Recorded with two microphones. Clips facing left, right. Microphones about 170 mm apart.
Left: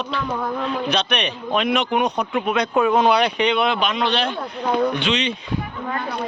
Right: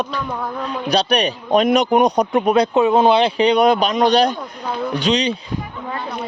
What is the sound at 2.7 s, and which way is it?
A man's voice, 25° right (ahead or behind).